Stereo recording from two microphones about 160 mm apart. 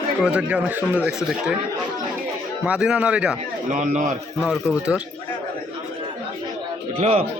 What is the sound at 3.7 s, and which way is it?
Speech, 50° right (ahead or behind).